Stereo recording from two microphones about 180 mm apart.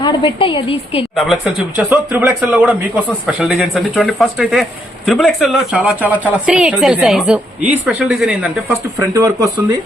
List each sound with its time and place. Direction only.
0.0 s a woman's voice: 30° left (ahead or behind)
1.1 s speech: centre (ahead or behind)
9.0 s speech: 20° right (ahead or behind)